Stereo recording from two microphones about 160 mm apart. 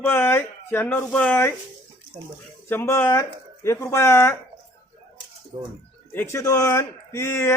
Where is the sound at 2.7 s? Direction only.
15° left (ahead or behind).